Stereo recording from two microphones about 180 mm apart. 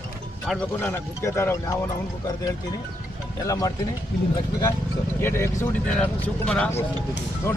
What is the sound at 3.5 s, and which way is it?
Speech, 20° left (ahead or behind).